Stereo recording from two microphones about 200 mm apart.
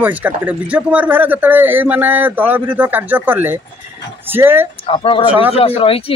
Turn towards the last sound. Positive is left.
turn(degrees=30)  # may be behind; listen again after turning